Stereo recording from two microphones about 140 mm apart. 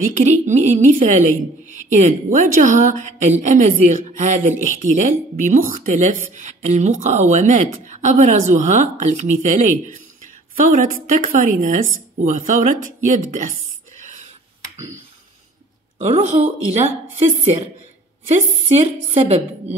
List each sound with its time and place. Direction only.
0.2 s a woman's voice: 60° right (ahead or behind)
6.3 s a woman's voice: 60° right (ahead or behind)
13.9 s a sound: 60° right (ahead or behind)
16.0 s a woman's voice: 55° right (ahead or behind)